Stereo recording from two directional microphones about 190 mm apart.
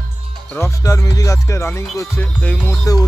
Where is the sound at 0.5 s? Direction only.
15° left (ahead or behind).